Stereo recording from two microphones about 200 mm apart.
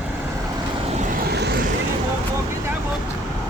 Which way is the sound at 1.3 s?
55° right (ahead or behind).